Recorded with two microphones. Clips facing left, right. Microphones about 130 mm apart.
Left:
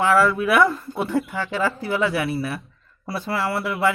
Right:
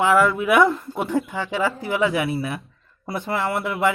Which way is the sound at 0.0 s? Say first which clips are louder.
Even; 15° right (ahead or behind).